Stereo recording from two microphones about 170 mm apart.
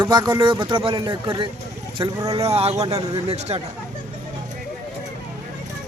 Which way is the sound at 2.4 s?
35° right (ahead or behind).